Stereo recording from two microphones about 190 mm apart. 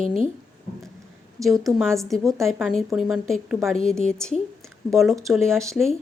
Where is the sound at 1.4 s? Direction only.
Centre (ahead or behind).